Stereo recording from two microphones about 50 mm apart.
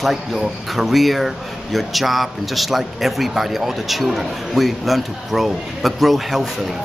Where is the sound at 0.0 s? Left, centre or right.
Centre.